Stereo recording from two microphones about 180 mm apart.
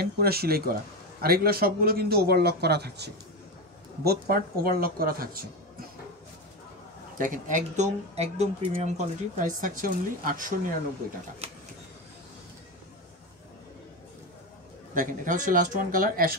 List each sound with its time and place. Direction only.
0.0 s a man's voice: 60° right (ahead or behind)
7.2 s speech: 45° right (ahead or behind)
11.4 s vehicle: 35° right (ahead or behind)
15.0 s speech: 45° right (ahead or behind)